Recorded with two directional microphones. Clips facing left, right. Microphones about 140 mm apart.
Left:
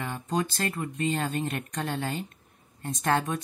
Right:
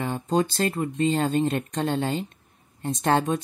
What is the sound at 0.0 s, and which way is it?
Speech, 30° right (ahead or behind).